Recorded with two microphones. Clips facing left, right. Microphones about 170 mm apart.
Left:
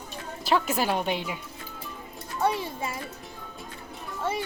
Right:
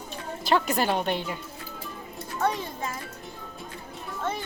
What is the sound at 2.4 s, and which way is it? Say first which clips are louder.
Speech: left 1 dB; 10° left (ahead or behind).